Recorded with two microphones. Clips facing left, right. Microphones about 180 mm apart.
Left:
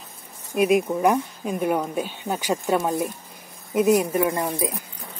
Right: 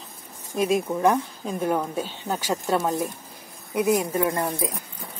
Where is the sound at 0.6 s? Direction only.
15° left (ahead or behind).